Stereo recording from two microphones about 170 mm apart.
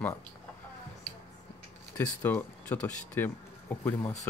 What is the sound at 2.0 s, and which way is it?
Speech, 10° left (ahead or behind).